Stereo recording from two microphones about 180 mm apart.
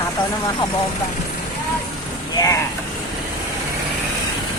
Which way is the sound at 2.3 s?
15° left (ahead or behind).